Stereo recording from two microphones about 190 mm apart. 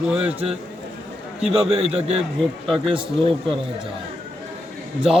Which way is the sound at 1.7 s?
35° right (ahead or behind).